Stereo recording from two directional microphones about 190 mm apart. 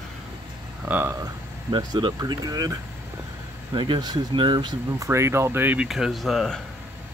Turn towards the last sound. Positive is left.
turn(degrees=0)  # may be behind; listen again after turning